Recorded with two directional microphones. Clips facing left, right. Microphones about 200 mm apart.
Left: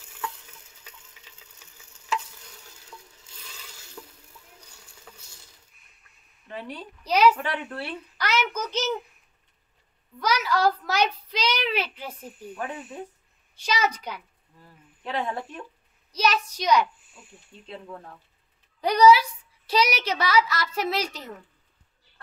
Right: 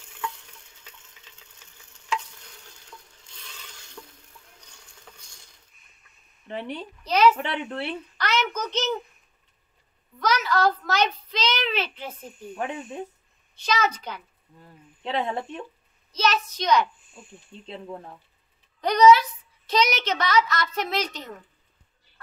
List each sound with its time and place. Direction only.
0.0 s stir: 5° left (ahead or behind)
6.4 s speech: 25° right (ahead or behind)
7.0 s a woman's voice: 10° left (ahead or behind)
10.1 s a woman's voice: 10° left (ahead or behind)
14.6 s a sound: 20° right (ahead or behind)
16.1 s a woman's voice: 10° left (ahead or behind)
17.6 s speech: 25° right (ahead or behind)
18.8 s a woman's voice: 10° left (ahead or behind)